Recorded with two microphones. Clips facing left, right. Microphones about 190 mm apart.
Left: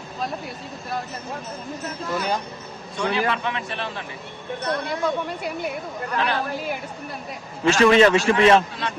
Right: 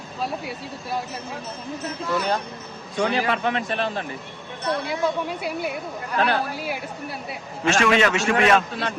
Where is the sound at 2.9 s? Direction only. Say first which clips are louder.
Right 1 dB; 50° right (ahead or behind).